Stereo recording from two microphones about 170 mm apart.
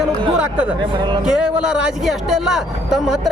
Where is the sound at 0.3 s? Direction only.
5° right (ahead or behind).